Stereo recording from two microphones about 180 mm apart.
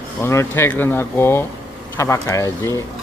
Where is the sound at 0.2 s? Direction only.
15° left (ahead or behind).